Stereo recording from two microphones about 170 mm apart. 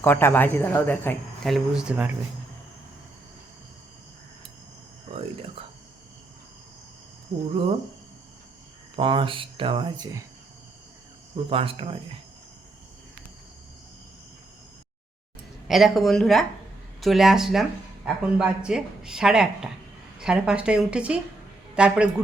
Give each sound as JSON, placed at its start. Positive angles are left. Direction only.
{"t": 0.0, "sound": "speech", "side_deg": 15}
{"t": 1.5, "sound": "speech", "side_deg": -5}
{"t": 5.1, "sound": "a sound", "side_deg": -35}
{"t": 9.0, "sound": "speech", "side_deg": -30}
{"t": 11.4, "sound": "speech", "side_deg": -35}
{"t": 15.6, "sound": "speech", "side_deg": 0}